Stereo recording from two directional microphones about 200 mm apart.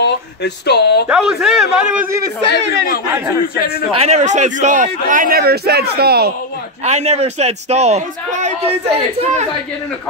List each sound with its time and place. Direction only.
0.0 s speech: 55° left (ahead or behind)
1.0 s a man's voice: 5° right (ahead or behind)
4.0 s a man's voice: 35° right (ahead or behind); by 6.3 s 50° right (ahead or behind)
6.8 s a man's voice: 35° right (ahead or behind)